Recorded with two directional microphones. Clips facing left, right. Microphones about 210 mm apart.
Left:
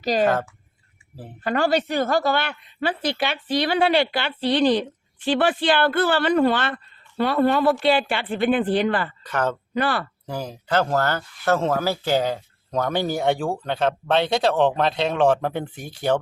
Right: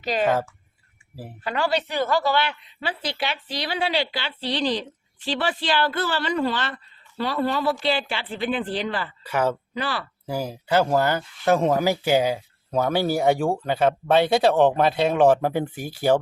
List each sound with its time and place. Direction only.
0.0 s speech: 40° left (ahead or behind)
1.5 s a woman's voice: 45° left (ahead or behind)
9.2 s speech: 10° right (ahead or behind)
9.7 s a woman's voice: 55° left (ahead or behind)
10.2 s speech: 10° right (ahead or behind)